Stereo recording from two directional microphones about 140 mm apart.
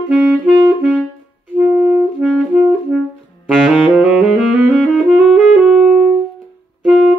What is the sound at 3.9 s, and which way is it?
Saxophone, 10° right (ahead or behind).